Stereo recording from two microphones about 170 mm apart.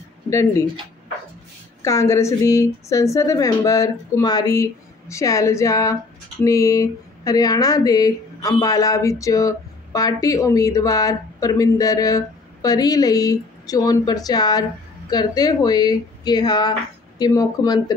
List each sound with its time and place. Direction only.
0.3 s a woman's voice: 15° left (ahead or behind)
1.8 s a woman's voice: 15° left (ahead or behind)